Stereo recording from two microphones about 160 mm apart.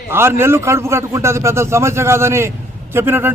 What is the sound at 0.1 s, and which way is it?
A man's voice, 15° right (ahead or behind).